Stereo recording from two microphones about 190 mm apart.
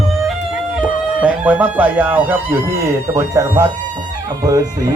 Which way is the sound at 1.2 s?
10° right (ahead or behind).